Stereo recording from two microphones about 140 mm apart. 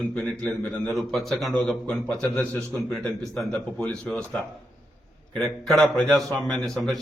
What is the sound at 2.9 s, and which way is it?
A man's voice, 5° left (ahead or behind).